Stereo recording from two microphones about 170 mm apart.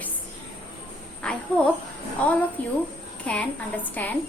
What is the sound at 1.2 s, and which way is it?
A woman's voice, 5° left (ahead or behind).